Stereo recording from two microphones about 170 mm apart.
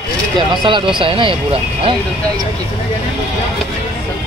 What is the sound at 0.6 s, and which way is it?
Speech, 30° right (ahead or behind).